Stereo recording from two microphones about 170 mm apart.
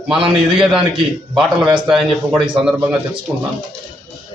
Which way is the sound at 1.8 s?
Centre (ahead or behind).